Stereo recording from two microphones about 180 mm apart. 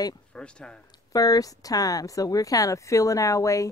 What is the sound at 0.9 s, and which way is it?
A woman's voice, 20° left (ahead or behind).